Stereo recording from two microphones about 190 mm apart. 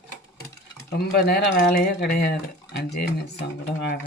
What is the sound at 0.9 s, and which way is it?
Speech, 55° left (ahead or behind).